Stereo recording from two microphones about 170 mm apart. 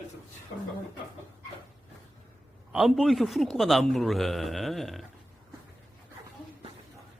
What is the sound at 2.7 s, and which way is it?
A man's voice, 5° right (ahead or behind).